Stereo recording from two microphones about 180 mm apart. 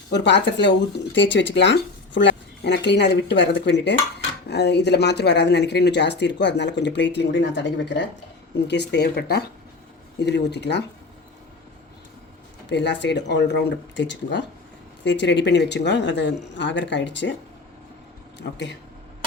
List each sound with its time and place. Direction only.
0.1 s speech: 75° left (ahead or behind)
8.6 s speech: 70° left (ahead or behind)
12.6 s speech: 75° left (ahead or behind)
18.3 s speech: 75° left (ahead or behind)